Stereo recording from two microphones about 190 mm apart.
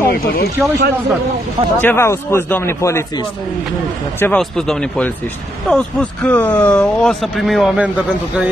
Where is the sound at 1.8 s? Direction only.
10° left (ahead or behind).